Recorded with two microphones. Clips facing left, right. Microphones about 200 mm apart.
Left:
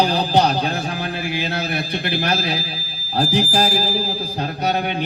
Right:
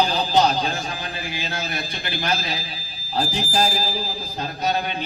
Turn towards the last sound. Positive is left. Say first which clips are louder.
# left 3 dB
turn(degrees=70)  # may be behind; listen again after turning